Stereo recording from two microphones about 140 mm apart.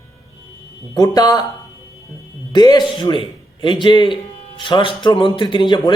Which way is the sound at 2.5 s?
30° left (ahead or behind).